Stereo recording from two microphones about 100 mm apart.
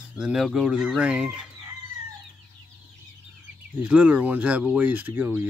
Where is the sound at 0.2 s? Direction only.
10° right (ahead or behind).